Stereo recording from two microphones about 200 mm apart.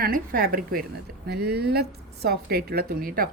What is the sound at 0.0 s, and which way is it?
A woman's voice, 45° right (ahead or behind).